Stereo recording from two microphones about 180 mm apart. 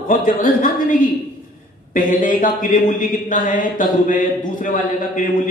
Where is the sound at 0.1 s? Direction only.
45° left (ahead or behind).